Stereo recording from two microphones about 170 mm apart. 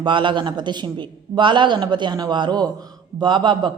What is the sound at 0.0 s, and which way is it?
A man's voice, 30° right (ahead or behind).